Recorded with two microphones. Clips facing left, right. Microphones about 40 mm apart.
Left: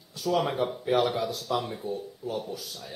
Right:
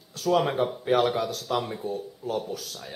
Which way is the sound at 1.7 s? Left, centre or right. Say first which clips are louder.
Right 2 dB; centre.